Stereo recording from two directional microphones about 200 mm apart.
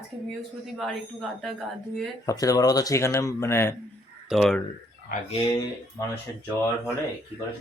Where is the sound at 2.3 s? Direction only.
15° left (ahead or behind).